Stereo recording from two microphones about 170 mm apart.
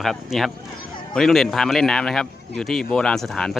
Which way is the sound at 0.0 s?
Centre (ahead or behind).